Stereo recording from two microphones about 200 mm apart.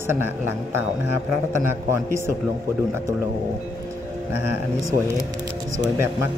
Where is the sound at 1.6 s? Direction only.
15° right (ahead or behind).